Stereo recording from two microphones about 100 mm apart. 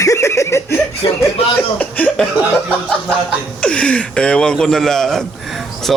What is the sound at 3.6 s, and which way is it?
Speech, 10° left (ahead or behind).